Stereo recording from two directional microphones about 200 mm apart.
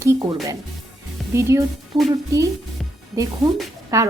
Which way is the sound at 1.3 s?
15° right (ahead or behind).